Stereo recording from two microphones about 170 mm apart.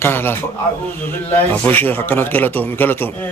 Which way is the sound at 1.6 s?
10° left (ahead or behind).